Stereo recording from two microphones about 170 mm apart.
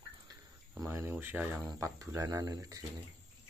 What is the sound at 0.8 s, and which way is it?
Speech, 15° right (ahead or behind).